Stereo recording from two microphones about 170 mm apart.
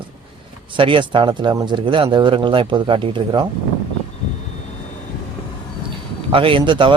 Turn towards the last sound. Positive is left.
turn(degrees=-30)  # may be behind; listen again after turning